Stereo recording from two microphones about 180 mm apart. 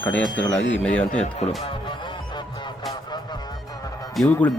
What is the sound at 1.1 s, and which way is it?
Speech, 40° left (ahead or behind).